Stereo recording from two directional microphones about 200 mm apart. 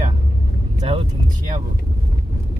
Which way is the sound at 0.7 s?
35° right (ahead or behind).